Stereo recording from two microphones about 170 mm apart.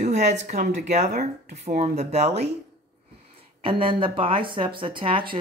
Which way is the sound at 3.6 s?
30° right (ahead or behind).